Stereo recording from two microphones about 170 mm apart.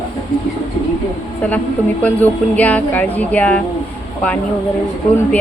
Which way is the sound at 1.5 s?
10° left (ahead or behind).